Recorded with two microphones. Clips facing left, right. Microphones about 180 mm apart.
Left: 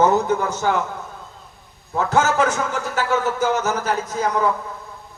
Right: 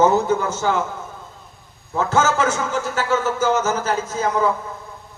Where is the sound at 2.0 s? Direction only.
15° left (ahead or behind).